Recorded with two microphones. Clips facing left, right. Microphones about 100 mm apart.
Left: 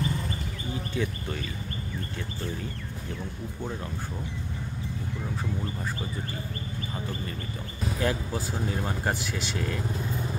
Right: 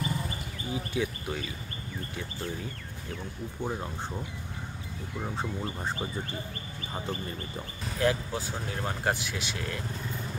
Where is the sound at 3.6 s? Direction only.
25° right (ahead or behind).